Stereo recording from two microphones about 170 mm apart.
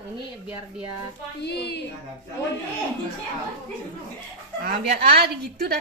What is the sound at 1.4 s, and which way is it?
Speech, 75° left (ahead or behind).